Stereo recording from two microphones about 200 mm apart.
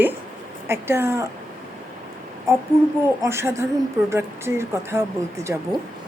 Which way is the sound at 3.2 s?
15° right (ahead or behind).